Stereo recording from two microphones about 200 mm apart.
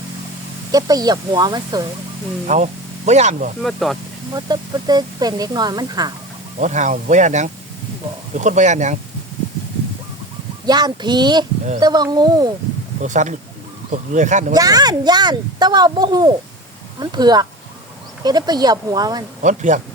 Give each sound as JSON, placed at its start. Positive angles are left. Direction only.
{"t": 0.7, "sound": "speech", "side_deg": -20}
{"t": 2.5, "sound": "speech", "side_deg": -35}
{"t": 3.6, "sound": "speech", "side_deg": 0}
{"t": 4.4, "sound": "speech", "side_deg": -20}
{"t": 6.6, "sound": "speech", "side_deg": -35}
{"t": 10.7, "sound": "speech", "side_deg": -20}
{"t": 13.0, "sound": "speech", "side_deg": -40}
{"t": 14.5, "sound": "speech", "side_deg": -20}
{"t": 19.4, "sound": "speech", "side_deg": -35}